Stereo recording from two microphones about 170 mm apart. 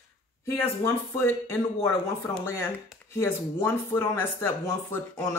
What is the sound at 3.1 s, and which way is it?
Speech, 15° left (ahead or behind).